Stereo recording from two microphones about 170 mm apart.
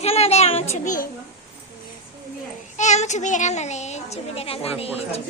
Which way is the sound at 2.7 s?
45° left (ahead or behind).